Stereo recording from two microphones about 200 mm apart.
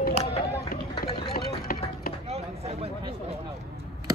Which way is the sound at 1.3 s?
50° left (ahead or behind).